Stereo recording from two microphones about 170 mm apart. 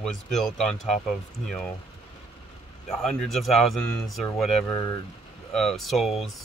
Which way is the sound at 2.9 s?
Centre (ahead or behind).